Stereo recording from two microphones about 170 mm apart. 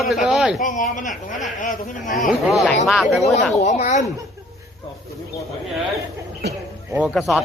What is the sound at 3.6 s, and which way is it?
Speech, 40° left (ahead or behind).